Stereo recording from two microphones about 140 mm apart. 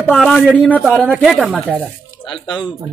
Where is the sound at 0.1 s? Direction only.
5° left (ahead or behind).